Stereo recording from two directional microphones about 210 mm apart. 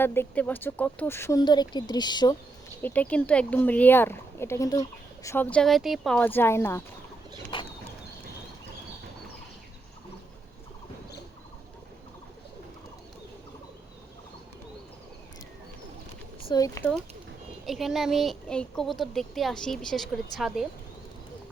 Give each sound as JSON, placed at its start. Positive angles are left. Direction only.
{"t": 0.0, "sound": "speech", "side_deg": 10}
{"t": 2.8, "sound": "speech", "side_deg": 5}
{"t": 7.5, "sound": "a sound", "side_deg": 25}
{"t": 16.5, "sound": "speech", "side_deg": 15}
{"t": 17.7, "sound": "a woman's voice", "side_deg": 0}